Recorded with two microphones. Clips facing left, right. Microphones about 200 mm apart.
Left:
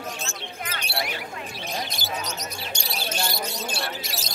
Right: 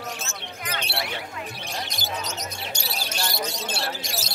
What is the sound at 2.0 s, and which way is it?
Basketball bounce, 20° right (ahead or behind).